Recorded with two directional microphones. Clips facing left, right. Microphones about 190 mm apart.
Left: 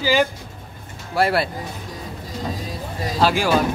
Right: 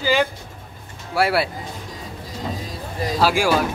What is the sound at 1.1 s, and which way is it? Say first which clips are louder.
Speech: even; 10° right (ahead or behind).